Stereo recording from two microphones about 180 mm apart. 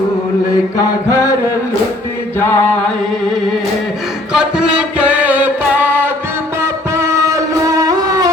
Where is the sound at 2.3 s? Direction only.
10° left (ahead or behind).